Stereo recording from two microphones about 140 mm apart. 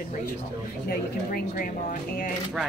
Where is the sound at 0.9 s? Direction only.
90° left.